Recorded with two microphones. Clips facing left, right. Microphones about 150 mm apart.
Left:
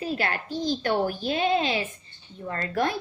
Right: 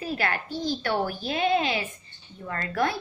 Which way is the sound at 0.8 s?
45° left (ahead or behind).